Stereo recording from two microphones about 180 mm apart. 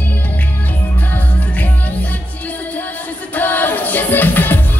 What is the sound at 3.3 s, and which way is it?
Music, 10° left (ahead or behind).